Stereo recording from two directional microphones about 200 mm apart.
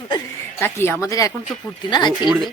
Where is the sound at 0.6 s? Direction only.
10° left (ahead or behind).